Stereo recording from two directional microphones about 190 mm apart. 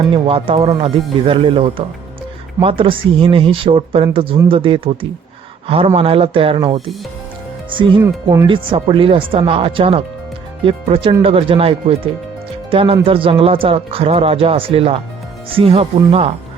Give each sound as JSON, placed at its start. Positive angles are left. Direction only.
{"t": 0.0, "sound": "speech", "side_deg": -30}